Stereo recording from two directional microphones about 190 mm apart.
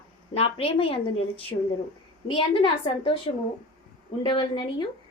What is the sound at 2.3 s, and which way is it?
A woman's voice, 30° left (ahead or behind).